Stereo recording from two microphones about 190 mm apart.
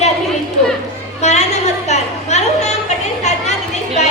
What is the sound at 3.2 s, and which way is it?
Children playing, 35° left (ahead or behind).